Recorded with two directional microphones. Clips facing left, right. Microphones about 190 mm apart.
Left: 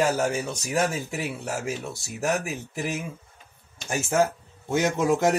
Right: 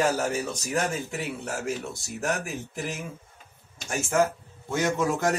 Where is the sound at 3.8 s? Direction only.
15° left (ahead or behind).